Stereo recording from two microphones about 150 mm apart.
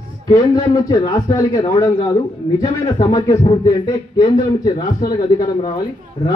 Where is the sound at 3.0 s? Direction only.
25° left (ahead or behind).